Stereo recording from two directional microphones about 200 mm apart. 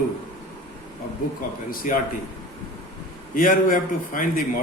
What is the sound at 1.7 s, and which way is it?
Speech, 45° left (ahead or behind).